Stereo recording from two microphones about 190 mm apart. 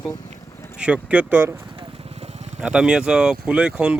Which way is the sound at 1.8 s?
30° right (ahead or behind).